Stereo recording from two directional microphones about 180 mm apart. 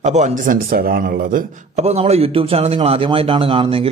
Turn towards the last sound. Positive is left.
turn(degrees=-30)  # may be behind; listen again after turning